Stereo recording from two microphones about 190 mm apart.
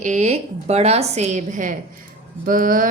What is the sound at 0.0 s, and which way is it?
A woman's voice, 40° right (ahead or behind).